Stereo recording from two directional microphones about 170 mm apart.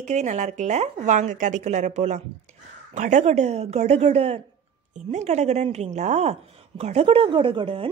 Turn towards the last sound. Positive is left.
turn(degrees=-30)  # may be behind; listen again after turning